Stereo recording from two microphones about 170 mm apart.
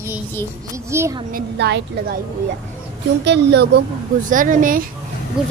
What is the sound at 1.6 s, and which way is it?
Speech, 90° right.